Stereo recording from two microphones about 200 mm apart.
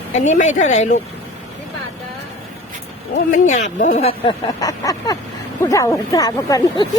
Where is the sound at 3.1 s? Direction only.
35° left (ahead or behind); by 6.8 s 20° left (ahead or behind).